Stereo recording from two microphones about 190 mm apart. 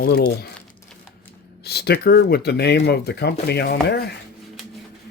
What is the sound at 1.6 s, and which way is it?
Speech, 55° left (ahead or behind).